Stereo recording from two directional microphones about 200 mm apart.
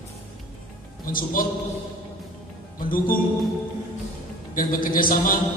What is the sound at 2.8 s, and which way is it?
Speech, 45° left (ahead or behind).